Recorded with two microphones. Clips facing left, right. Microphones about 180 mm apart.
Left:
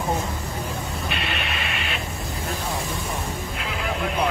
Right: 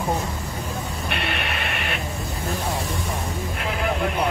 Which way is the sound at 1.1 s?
60° right (ahead or behind).